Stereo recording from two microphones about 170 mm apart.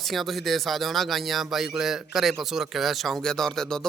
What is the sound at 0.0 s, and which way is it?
Speech, centre (ahead or behind).